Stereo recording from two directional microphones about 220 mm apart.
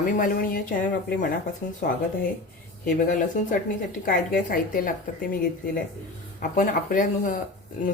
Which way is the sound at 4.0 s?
40° left (ahead or behind).